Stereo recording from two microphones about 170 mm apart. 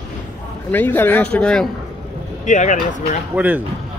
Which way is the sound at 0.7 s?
10° left (ahead or behind).